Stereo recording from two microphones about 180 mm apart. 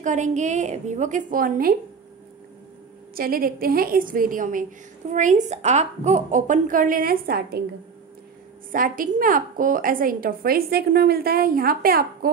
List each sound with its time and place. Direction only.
0.0 s a woman's voice: 40° right (ahead or behind)
3.2 s a woman's voice: 55° right (ahead or behind)
8.7 s a woman's voice: 50° right (ahead or behind)